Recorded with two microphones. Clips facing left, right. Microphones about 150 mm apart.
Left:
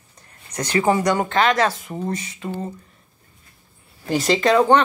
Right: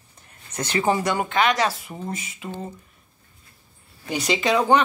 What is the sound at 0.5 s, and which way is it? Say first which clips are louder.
Speech: left 4 dB; 25° right (ahead or behind).